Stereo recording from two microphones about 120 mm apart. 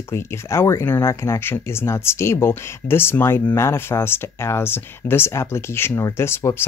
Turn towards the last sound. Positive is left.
turn(degrees=20)  # may be behind; listen again after turning